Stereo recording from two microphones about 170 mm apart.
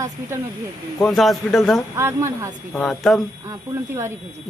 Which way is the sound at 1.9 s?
15° right (ahead or behind).